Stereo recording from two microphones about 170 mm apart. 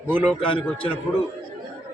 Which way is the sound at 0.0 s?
10° right (ahead or behind).